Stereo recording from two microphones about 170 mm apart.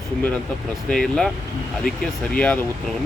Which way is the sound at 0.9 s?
Centre (ahead or behind).